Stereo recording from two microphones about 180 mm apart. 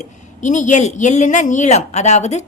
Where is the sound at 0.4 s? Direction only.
40° left (ahead or behind).